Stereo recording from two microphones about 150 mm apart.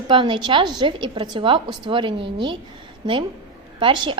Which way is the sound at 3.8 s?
30° right (ahead or behind).